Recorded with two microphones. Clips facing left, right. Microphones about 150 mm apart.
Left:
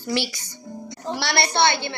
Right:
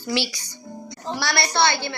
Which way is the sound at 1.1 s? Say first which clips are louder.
Left 1 dB; 25° left (ahead or behind).